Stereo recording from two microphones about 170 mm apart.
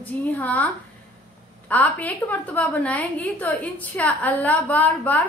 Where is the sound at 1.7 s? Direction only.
10° left (ahead or behind).